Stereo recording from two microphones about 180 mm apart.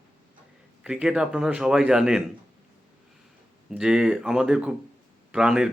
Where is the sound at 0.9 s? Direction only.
5° right (ahead or behind).